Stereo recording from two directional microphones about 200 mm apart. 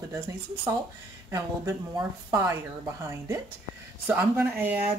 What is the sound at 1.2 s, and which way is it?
Speech, 15° right (ahead or behind).